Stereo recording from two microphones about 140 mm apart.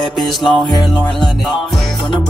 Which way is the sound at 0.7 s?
30° left (ahead or behind).